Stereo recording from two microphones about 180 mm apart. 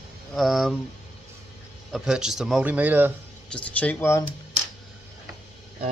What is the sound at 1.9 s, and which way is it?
Speech, 5° right (ahead or behind).